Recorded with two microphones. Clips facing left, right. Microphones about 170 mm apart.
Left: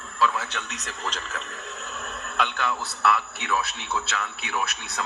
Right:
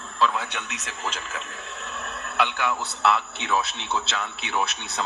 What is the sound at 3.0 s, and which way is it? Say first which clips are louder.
A man's voice: right 1 dB; 25° right (ahead or behind).